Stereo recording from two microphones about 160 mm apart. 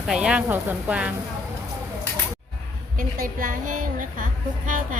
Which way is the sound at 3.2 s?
60° right (ahead or behind).